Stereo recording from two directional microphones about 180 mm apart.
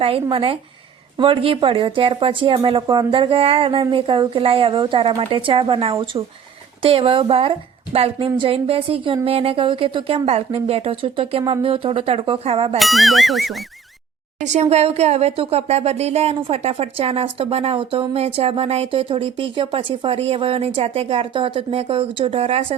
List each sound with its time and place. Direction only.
0.0 s speech: 30° right (ahead or behind)
12.8 s speech: centre (ahead or behind)
14.4 s speech: 40° right (ahead or behind)